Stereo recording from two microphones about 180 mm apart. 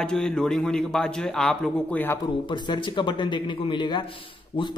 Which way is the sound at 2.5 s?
25° left (ahead or behind).